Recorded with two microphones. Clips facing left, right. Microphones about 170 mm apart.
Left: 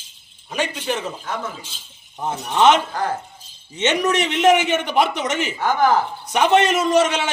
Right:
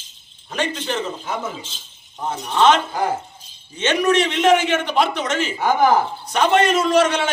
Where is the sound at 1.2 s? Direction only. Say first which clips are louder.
Right 2 dB; 10° right (ahead or behind).